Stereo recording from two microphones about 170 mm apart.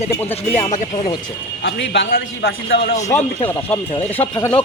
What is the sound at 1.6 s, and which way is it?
A man's voice, 90° left.